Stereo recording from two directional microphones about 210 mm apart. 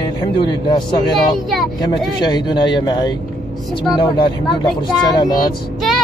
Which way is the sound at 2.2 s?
20° left (ahead or behind).